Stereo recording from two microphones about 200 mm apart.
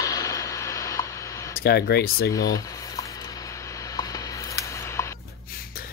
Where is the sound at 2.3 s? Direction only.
15° left (ahead or behind).